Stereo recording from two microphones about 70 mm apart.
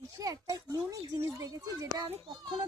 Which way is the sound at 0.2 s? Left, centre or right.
Right.